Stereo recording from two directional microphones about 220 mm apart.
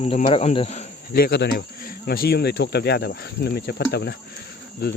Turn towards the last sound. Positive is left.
turn(degrees=45)  # may be behind; listen again after turning